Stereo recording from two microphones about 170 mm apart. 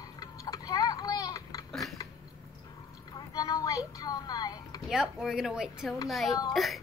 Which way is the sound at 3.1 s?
20° left (ahead or behind).